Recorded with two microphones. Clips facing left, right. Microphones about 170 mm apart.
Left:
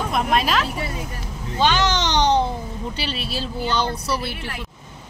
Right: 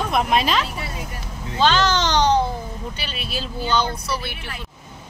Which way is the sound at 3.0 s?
30° left (ahead or behind).